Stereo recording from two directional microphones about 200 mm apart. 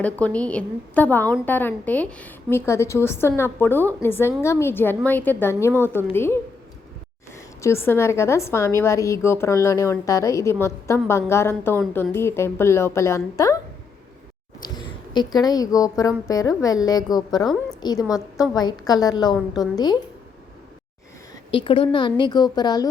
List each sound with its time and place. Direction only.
0.0 s a woman's voice: 5° left (ahead or behind)
7.6 s a woman's voice: 10° left (ahead or behind)
15.1 s a woman's voice: 20° left (ahead or behind)
17.4 s a woman's voice: centre (ahead or behind)
18.5 s a woman's voice: 20° left (ahead or behind)
21.5 s a woman's voice: 25° left (ahead or behind)